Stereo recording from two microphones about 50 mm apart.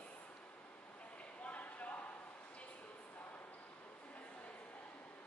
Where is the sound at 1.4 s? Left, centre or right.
Left.